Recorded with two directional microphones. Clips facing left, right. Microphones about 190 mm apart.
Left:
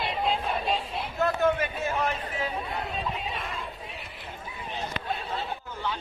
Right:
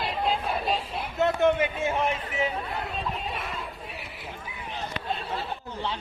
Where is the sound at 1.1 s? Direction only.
20° right (ahead or behind).